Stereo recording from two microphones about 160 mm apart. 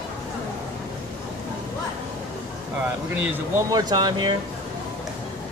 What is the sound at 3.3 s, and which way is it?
Speech, 20° right (ahead or behind).